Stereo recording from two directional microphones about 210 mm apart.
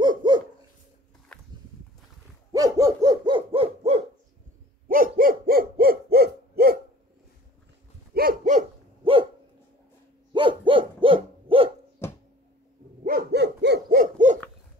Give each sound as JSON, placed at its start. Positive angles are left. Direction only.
{"t": 0.0, "sound": "dog", "side_deg": -20}
{"t": 1.3, "sound": "walk", "side_deg": 5}
{"t": 2.5, "sound": "hoot", "side_deg": -15}
{"t": 4.8, "sound": "hoot", "side_deg": -40}
{"t": 8.1, "sound": "dog", "side_deg": -45}
{"t": 10.3, "sound": "owl", "side_deg": -25}
{"t": 13.0, "sound": "dog", "side_deg": -45}